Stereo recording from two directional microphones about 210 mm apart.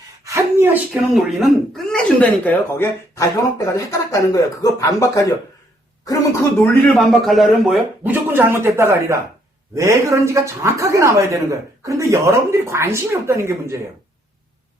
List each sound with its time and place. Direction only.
0.3 s speech: 10° right (ahead or behind); by 5.4 s 15° left (ahead or behind)
6.6 s a woman's voice: centre (ahead or behind)